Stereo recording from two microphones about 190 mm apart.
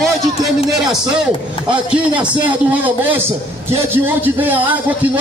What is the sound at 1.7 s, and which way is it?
A man's voice, 5° right (ahead or behind).